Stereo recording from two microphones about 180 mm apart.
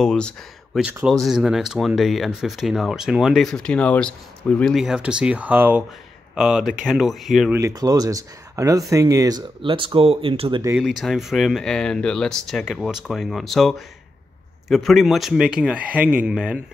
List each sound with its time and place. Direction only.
0.0 s speech: 5° left (ahead or behind)
7.5 s speech: 20° right (ahead or behind)
10.8 s speech: centre (ahead or behind)